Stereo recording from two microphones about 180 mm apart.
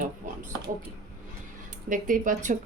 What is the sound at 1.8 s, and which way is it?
Speech, 45° right (ahead or behind).